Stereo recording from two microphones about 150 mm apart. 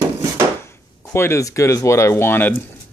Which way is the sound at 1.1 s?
15° left (ahead or behind).